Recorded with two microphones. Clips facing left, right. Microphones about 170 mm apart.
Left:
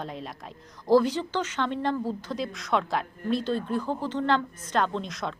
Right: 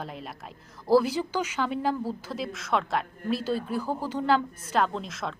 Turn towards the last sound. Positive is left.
turn(degrees=0)  # may be behind; listen again after turning